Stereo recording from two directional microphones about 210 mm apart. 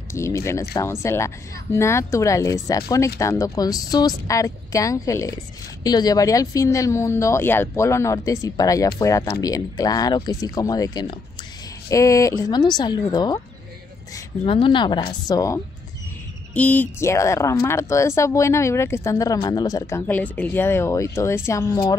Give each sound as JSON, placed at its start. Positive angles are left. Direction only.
{"t": 0.1, "sound": "a woman's voice", "side_deg": 15}